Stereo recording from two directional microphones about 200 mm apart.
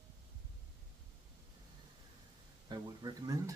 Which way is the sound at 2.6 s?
20° right (ahead or behind).